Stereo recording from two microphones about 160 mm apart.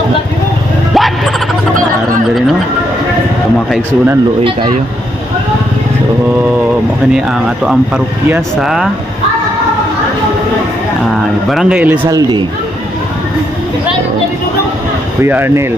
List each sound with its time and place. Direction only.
0.9 s a sound: centre (ahead or behind)
3.7 s speech: 10° right (ahead or behind)
7.2 s speech: 5° right (ahead or behind)
11.5 s speech: 10° right (ahead or behind)
12.1 s speech: 25° right (ahead or behind)
15.2 s speech: 15° right (ahead or behind)